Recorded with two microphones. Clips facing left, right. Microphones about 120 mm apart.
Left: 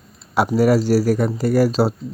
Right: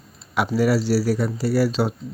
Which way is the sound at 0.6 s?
45° left (ahead or behind).